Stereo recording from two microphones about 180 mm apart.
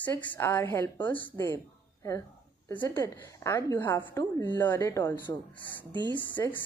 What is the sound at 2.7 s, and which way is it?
A woman's voice, 10° left (ahead or behind).